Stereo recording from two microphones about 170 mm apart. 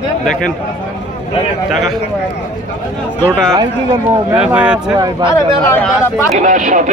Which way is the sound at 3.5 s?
20° right (ahead or behind).